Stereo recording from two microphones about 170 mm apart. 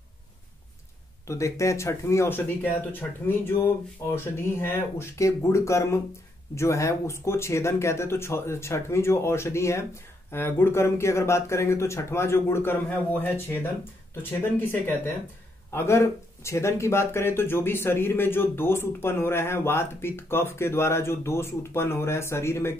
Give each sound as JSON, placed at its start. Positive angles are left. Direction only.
{"t": 1.2, "sound": "speech", "side_deg": 15}
{"t": 14.6, "sound": "speech", "side_deg": 10}